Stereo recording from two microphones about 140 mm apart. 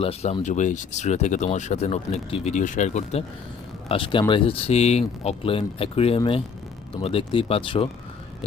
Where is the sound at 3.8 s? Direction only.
40° left (ahead or behind).